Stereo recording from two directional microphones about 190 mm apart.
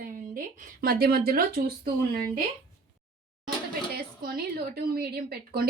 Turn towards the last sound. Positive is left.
turn(degrees=-55)  # may be behind; listen again after turning